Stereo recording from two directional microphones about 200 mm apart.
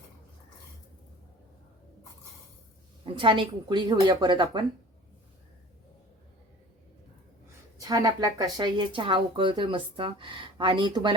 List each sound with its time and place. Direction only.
3.0 s speech: 25° right (ahead or behind)
7.8 s speech: 20° right (ahead or behind)